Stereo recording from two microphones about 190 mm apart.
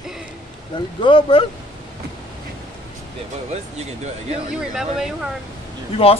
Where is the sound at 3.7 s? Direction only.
35° right (ahead or behind).